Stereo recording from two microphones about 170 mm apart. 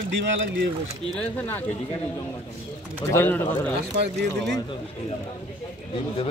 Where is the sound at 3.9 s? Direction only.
80° right.